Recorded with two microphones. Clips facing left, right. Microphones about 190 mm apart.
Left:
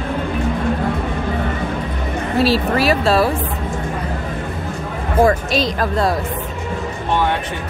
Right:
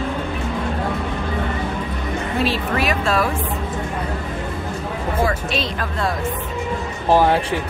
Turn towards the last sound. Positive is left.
turn(degrees=-35)  # may be behind; listen again after turning